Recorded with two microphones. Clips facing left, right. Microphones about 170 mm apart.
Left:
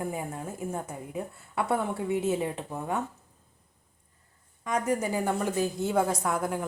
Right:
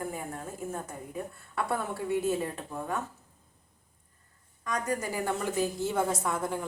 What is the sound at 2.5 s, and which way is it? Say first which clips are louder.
Speech: left 3 dB; 20° left (ahead or behind).